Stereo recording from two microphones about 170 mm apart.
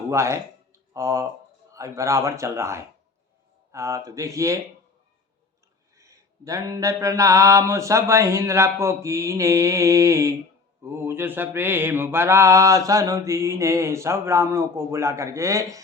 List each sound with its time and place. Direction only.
0.1 s speech: 15° right (ahead or behind)
1.7 s mantra: 20° right (ahead or behind)
6.0 s mantra: 20° right (ahead or behind)